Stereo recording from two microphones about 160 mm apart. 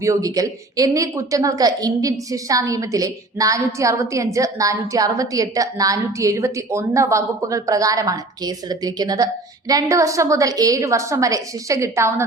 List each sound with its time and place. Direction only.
0.0 s a woman's voice: 20° right (ahead or behind)